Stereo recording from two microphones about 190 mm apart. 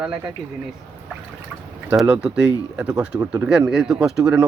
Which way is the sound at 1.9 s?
5° right (ahead or behind).